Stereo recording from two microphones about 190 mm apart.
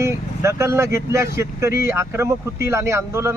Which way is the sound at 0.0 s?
15° right (ahead or behind).